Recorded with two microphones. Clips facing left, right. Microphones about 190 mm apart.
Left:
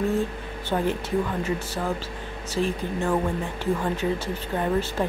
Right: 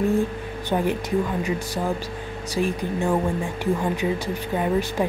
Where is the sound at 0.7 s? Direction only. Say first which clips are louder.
Right 2 dB; 15° right (ahead or behind).